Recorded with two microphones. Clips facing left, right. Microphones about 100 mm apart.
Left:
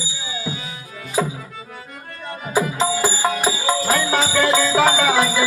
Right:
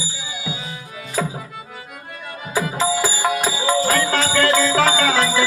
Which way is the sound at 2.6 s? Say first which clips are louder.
Left 1 dB; 20° left (ahead or behind).